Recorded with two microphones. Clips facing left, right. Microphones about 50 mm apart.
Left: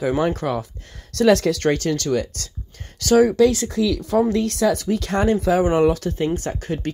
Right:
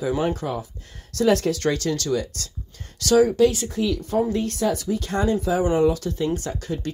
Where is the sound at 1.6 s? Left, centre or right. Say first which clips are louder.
Left 3 dB; left.